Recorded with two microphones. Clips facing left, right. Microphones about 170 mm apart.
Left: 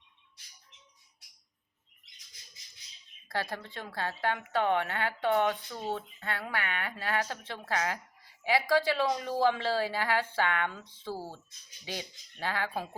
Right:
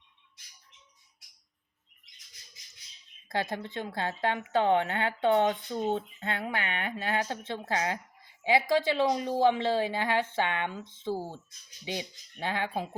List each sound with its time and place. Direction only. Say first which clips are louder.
3.2 s speech: right 3 dB; 20° right (ahead or behind)